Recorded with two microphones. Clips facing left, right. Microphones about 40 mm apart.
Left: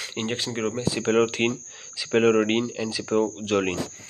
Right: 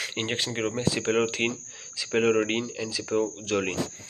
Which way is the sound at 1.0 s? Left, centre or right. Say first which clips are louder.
Left 6 dB; left.